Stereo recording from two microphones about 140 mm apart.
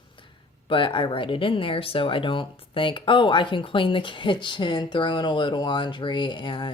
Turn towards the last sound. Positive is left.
turn(degrees=35)  # may be behind; listen again after turning